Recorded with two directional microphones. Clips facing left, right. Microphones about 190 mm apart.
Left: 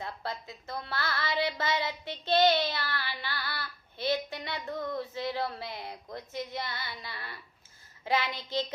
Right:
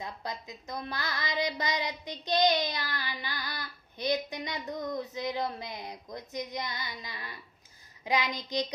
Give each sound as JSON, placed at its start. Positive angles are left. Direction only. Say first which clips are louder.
{"t": 0.0, "sound": "a woman's voice", "louder": "left 1 dB", "side_deg": -15}